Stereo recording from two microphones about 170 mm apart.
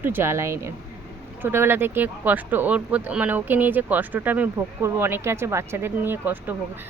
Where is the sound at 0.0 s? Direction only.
15° right (ahead or behind).